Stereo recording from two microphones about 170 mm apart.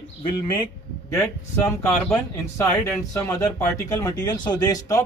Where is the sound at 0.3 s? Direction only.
25° left (ahead or behind).